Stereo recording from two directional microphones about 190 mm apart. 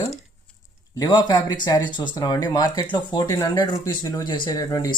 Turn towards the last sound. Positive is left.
turn(degrees=20)  # may be behind; listen again after turning